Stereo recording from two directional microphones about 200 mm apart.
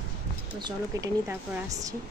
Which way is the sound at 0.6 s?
15° right (ahead or behind).